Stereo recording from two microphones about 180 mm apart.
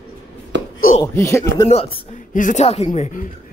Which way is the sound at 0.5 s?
90° right.